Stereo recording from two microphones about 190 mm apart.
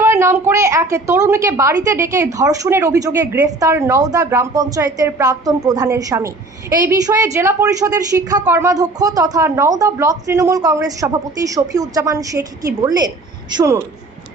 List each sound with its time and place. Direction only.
0.0 s a woman's voice: 15° right (ahead or behind)